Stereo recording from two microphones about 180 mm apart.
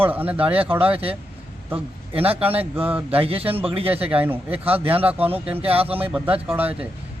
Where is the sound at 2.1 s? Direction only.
30° right (ahead or behind).